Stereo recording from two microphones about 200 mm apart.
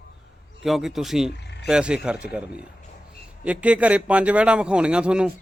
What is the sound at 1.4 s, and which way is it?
Frog, 55° left (ahead or behind).